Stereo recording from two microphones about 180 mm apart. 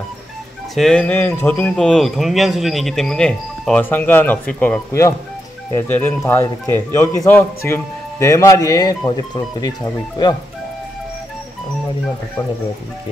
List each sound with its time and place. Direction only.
0.7 s speech: 5° left (ahead or behind); by 10.3 s 25° left (ahead or behind)